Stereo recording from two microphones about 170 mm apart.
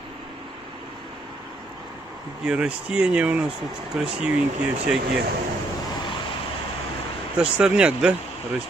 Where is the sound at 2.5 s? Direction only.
5° right (ahead or behind).